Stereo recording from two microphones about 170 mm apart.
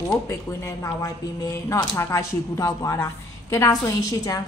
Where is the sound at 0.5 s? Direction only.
20° left (ahead or behind).